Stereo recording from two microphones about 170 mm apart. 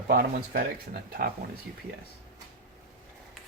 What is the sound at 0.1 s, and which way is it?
Speech, 60° right (ahead or behind).